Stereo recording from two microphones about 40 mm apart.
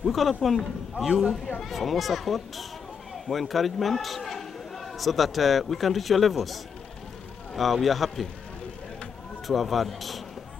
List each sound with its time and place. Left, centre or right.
0.0 s a child's voice: centre
9.5 s a child's voice: centre